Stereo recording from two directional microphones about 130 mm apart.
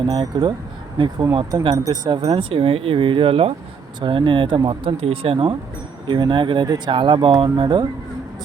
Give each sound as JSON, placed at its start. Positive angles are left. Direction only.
{"t": 0.0, "sound": "speech", "side_deg": -35}
{"t": 2.2, "sound": "speech", "side_deg": -50}